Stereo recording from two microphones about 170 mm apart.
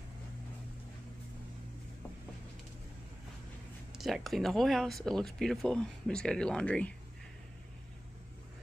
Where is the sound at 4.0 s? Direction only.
Centre (ahead or behind).